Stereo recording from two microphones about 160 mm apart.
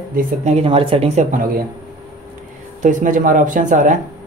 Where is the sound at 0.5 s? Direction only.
35° right (ahead or behind); by 1.5 s 55° right (ahead or behind).